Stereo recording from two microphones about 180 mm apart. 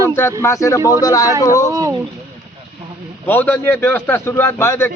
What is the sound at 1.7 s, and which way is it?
Speech, 15° right (ahead or behind).